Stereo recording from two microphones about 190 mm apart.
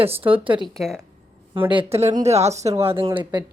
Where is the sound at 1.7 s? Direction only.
30° right (ahead or behind).